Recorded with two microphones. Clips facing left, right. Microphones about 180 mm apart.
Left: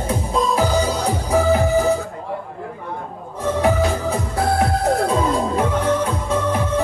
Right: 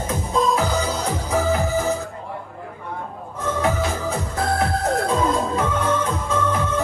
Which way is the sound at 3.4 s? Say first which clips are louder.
Left 4 dB; 35° left (ahead or behind).